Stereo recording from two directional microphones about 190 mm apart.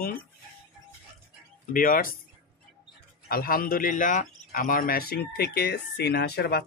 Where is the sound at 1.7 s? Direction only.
45° left (ahead or behind).